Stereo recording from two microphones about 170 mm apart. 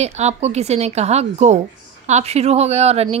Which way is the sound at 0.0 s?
40° right (ahead or behind).